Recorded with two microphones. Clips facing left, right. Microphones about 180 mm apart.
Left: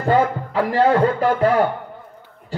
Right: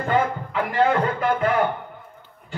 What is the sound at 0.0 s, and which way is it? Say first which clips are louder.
A man's voice: left 4 dB; 35° left (ahead or behind).